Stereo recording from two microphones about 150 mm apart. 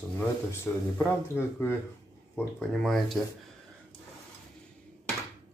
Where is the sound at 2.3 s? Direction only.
5° left (ahead or behind).